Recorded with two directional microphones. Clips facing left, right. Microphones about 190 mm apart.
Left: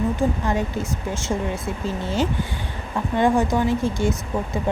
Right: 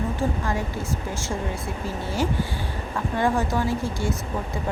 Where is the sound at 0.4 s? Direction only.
20° left (ahead or behind).